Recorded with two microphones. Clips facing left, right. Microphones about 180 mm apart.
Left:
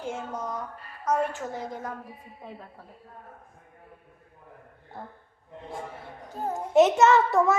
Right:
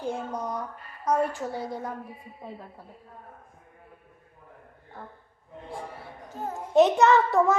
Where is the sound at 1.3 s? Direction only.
20° left (ahead or behind).